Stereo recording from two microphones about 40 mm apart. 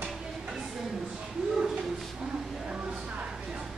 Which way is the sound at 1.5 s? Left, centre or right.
Right.